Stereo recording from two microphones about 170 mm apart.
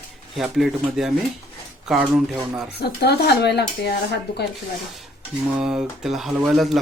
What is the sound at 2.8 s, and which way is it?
Speech, 75° left (ahead or behind).